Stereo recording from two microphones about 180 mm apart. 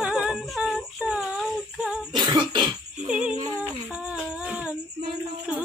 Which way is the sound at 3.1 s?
5° right (ahead or behind).